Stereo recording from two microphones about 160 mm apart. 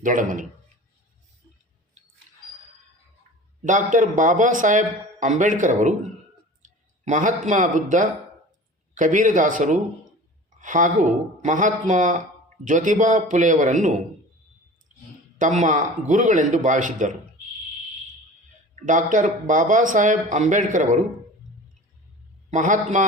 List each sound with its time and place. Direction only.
0.0 s speech: 55° right (ahead or behind)
3.6 s a man's voice: 55° right (ahead or behind)
15.4 s speech: 50° right (ahead or behind)
18.9 s speech: 50° right (ahead or behind)
22.4 s speech: 50° right (ahead or behind)